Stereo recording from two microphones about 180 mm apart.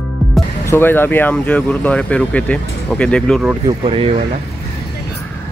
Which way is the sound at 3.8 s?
35° right (ahead or behind).